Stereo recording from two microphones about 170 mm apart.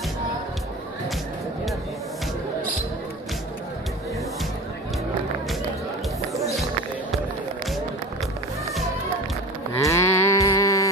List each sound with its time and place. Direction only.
9.8 s livestock: 15° left (ahead or behind)